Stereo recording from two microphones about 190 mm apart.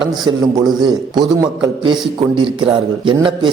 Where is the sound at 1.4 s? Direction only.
25° right (ahead or behind).